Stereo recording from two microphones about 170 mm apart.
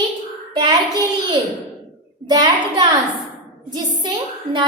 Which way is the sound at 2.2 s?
25° right (ahead or behind).